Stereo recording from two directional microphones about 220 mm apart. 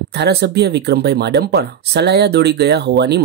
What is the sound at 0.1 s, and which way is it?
Speech, 50° right (ahead or behind).